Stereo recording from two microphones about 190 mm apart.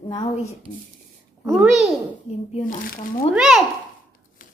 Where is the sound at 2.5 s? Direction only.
45° left (ahead or behind).